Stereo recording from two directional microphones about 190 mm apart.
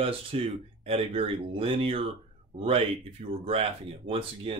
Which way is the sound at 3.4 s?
30° right (ahead or behind).